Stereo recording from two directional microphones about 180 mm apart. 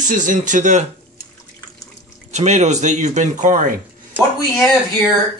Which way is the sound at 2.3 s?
40° right (ahead or behind).